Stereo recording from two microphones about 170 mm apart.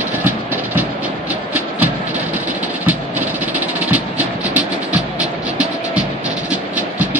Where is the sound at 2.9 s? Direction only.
10° right (ahead or behind).